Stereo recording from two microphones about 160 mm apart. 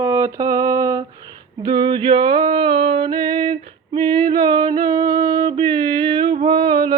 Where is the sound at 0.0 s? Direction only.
20° right (ahead or behind).